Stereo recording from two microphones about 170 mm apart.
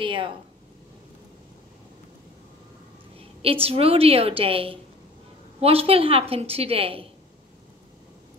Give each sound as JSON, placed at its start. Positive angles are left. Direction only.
{"t": 0.0, "sound": "a woman's voice", "side_deg": -30}
{"t": 3.2, "sound": "a woman's voice", "side_deg": -35}